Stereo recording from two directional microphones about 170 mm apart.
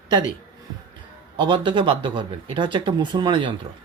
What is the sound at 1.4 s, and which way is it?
Speech, 30° right (ahead or behind).